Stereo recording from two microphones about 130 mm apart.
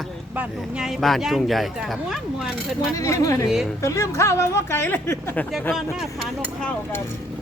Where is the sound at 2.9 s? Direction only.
25° left (ahead or behind).